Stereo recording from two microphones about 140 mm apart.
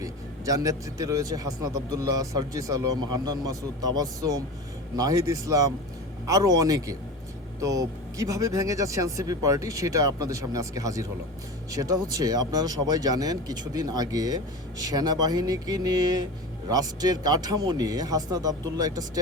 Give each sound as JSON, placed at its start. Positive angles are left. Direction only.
{"t": 0.0, "sound": "speech", "side_deg": -25}